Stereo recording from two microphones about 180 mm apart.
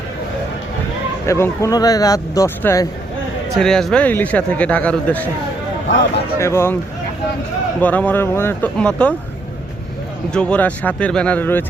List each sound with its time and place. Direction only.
1.3 s speech: 15° left (ahead or behind)
3.6 s speech: 5° left (ahead or behind)
6.4 s speech: 15° left (ahead or behind)
7.8 s speech: 10° left (ahead or behind)
10.3 s speech: 5° left (ahead or behind)